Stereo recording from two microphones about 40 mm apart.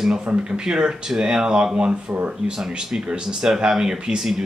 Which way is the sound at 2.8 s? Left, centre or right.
Centre.